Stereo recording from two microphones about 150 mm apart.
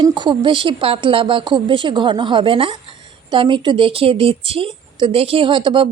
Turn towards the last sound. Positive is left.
turn(degrees=-35)  # may be behind; listen again after turning